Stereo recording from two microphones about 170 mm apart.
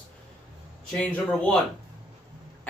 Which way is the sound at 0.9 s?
5° left (ahead or behind).